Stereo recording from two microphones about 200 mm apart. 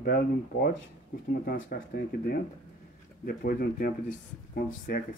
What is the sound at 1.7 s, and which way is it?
Speech, 50° left (ahead or behind).